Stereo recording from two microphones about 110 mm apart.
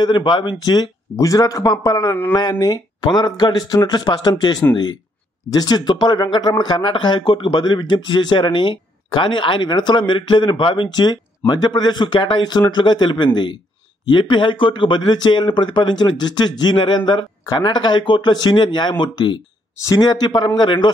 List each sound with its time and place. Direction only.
0.0 s speech: 45° left (ahead or behind)
19.8 s speech: 35° left (ahead or behind)